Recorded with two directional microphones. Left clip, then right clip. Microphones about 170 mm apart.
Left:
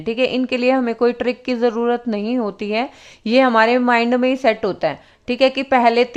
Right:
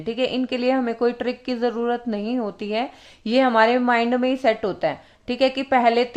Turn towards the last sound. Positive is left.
turn(degrees=25)  # may be behind; listen again after turning